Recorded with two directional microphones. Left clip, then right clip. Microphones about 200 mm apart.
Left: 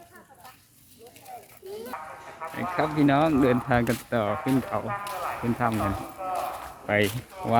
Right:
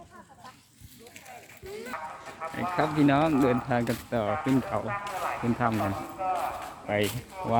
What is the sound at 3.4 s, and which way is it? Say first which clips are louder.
Speech: left 3 dB; 20° left (ahead or behind).